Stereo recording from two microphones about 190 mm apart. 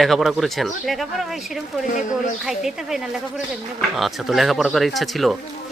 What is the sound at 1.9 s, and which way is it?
Speech, 40° left (ahead or behind).